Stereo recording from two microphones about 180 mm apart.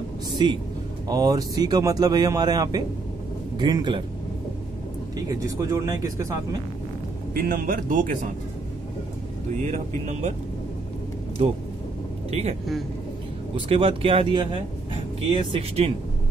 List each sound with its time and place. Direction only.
1.0 s a man's voice: 20° right (ahead or behind)
5.1 s a man's voice: 20° right (ahead or behind)
7.3 s speech: 50° right (ahead or behind)
9.6 s speech: 40° right (ahead or behind)
11.4 s speech: 35° right (ahead or behind)
13.6 s a man's voice: 30° right (ahead or behind)